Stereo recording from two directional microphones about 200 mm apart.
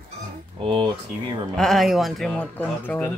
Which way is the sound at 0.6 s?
25° right (ahead or behind).